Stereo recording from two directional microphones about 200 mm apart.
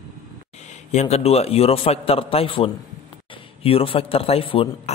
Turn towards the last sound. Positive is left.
turn(degrees=25)  # may be behind; listen again after turning